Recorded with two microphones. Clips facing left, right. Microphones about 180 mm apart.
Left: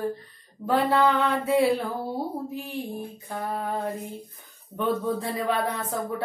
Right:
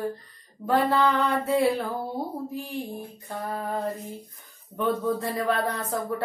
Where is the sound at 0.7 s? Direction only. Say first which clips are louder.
Left 1 dB; centre (ahead or behind).